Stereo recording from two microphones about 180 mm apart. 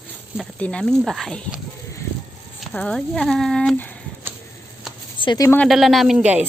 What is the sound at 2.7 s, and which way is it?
A woman's voice, 5° left (ahead or behind).